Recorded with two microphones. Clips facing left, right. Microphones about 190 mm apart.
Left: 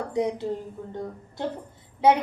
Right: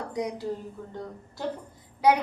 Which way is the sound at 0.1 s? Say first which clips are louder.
Left 6 dB; 25° left (ahead or behind).